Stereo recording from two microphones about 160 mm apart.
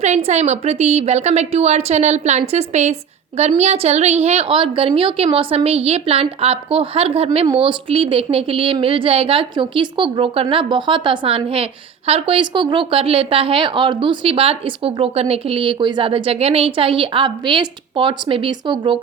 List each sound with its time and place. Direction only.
0.0 s a woman's voice: 45° right (ahead or behind); by 18.9 s 30° right (ahead or behind)